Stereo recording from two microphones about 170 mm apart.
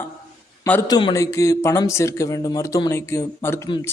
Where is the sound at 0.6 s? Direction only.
15° left (ahead or behind).